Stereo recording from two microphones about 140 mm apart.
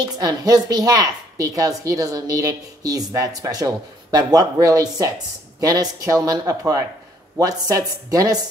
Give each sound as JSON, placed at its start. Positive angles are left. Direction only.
{"t": 0.0, "sound": "a woman's voice", "side_deg": -25}